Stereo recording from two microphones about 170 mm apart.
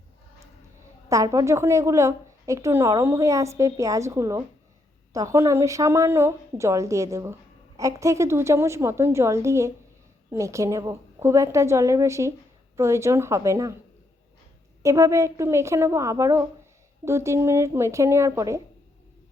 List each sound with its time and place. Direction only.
1.1 s a woman's voice: 20° right (ahead or behind)
14.8 s a woman's voice: 15° right (ahead or behind)